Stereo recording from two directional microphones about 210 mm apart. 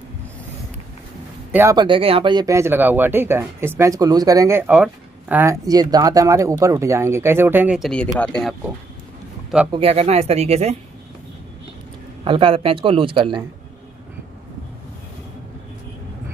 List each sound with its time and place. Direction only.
1.5 s speech: 10° right (ahead or behind); by 8.5 s 5° left (ahead or behind)
9.7 s speech: 25° right (ahead or behind)
12.3 s speech: 25° right (ahead or behind)